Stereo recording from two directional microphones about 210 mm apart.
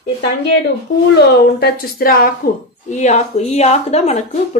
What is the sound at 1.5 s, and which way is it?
Speech, 50° left (ahead or behind).